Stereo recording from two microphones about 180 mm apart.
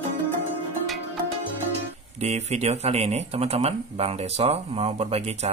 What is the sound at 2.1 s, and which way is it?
Speech, 40° right (ahead or behind).